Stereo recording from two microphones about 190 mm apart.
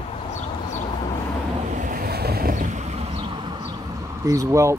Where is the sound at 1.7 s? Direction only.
45° right (ahead or behind); by 3.8 s 20° right (ahead or behind).